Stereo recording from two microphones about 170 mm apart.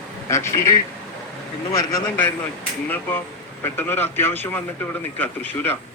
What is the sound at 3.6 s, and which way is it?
Speech, 15° left (ahead or behind).